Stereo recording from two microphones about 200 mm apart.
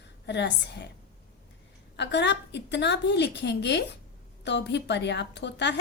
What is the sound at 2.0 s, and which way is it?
A woman's voice, 60° left (ahead or behind).